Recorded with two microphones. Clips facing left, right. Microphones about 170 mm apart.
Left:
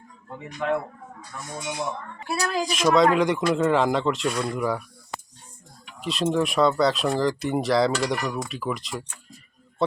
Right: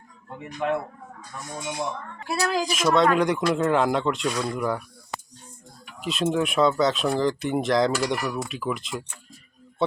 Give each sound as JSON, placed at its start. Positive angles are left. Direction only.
{"t": 2.2, "sound": "speech", "side_deg": 0}
{"t": 6.0, "sound": "speech", "side_deg": 0}